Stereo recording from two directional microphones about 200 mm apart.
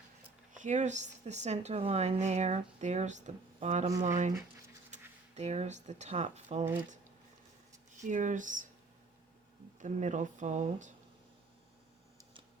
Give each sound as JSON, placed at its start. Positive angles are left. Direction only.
{"t": 0.5, "sound": "speech", "side_deg": -35}
{"t": 8.0, "sound": "speech", "side_deg": -40}
{"t": 9.8, "sound": "speech", "side_deg": -35}